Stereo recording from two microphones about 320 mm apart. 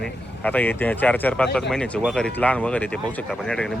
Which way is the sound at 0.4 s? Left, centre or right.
Centre.